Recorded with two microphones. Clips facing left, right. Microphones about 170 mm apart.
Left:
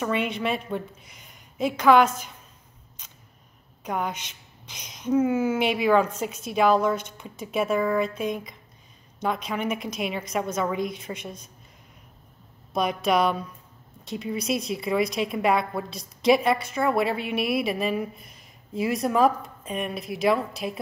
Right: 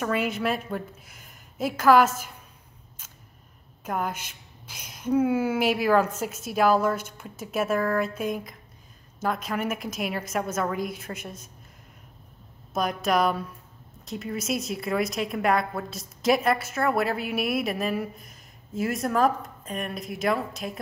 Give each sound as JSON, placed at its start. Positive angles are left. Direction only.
{"t": 0.0, "sound": "a woman's voice", "side_deg": -5}
{"t": 3.8, "sound": "a woman's voice", "side_deg": -5}
{"t": 12.7, "sound": "a woman's voice", "side_deg": 0}